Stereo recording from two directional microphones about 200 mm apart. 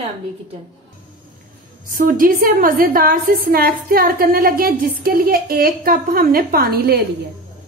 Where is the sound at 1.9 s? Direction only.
45° right (ahead or behind).